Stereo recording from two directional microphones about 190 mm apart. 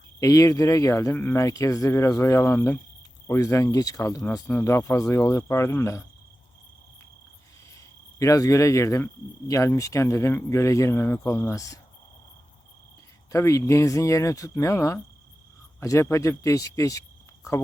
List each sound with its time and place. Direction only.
0.2 s a man's voice: 15° left (ahead or behind)
7.8 s a man's voice: 15° left (ahead or behind)
13.3 s a man's voice: 15° left (ahead or behind)